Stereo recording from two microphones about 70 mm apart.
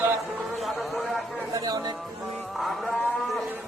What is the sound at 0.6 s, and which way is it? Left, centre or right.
Speech, centre.